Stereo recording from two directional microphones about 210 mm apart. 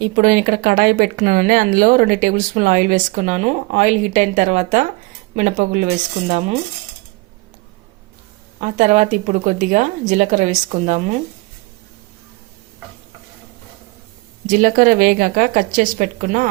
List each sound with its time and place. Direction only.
0.2 s speech: 40° right (ahead or behind)
8.6 s speech: 35° right (ahead or behind)
14.4 s speech: 40° right (ahead or behind)